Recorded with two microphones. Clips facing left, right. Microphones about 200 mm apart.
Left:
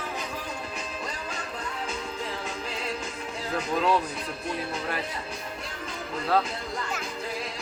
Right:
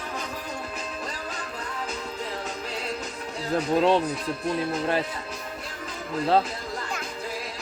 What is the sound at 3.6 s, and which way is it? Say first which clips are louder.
Speech: right 4 dB; 25° right (ahead or behind).